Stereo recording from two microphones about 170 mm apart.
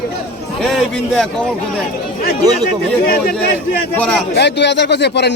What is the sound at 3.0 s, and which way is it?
Speech, 65° left (ahead or behind).